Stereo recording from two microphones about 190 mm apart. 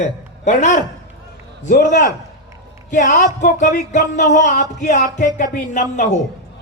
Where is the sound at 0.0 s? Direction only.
35° left (ahead or behind).